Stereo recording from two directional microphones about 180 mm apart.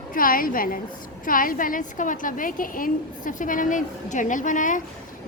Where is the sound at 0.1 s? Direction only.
50° left (ahead or behind).